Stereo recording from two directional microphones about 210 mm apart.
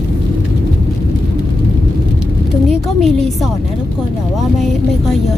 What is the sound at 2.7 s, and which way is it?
Music, centre (ahead or behind).